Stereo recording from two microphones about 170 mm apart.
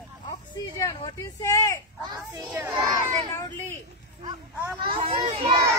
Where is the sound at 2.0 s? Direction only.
20° right (ahead or behind).